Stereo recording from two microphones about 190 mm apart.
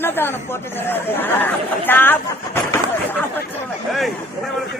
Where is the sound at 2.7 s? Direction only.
10° left (ahead or behind).